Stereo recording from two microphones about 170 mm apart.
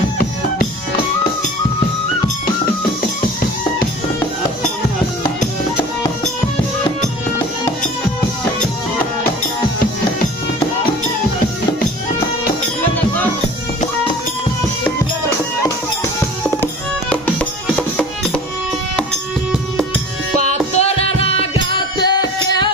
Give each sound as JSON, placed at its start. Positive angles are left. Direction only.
{"t": 17.7, "sound": "music", "side_deg": 5}
{"t": 20.4, "sound": "music", "side_deg": 40}